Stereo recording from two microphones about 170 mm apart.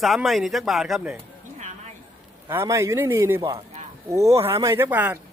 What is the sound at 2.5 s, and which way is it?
A man's voice, 15° right (ahead or behind).